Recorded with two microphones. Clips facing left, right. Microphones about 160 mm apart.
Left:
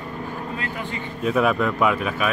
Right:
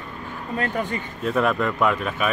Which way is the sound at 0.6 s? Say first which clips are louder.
Right 5 dB; 45° right (ahead or behind).